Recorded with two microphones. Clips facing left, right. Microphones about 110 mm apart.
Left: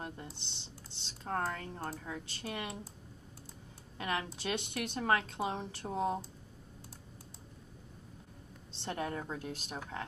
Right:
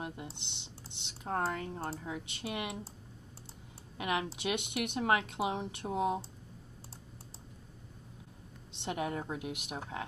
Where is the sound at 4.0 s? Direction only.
15° right (ahead or behind).